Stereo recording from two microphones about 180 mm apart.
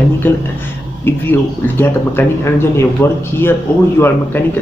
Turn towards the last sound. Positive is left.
turn(degrees=10)  # may be behind; listen again after turning